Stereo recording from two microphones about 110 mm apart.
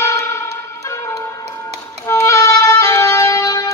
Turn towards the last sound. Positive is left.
turn(degrees=30)  # may be behind; listen again after turning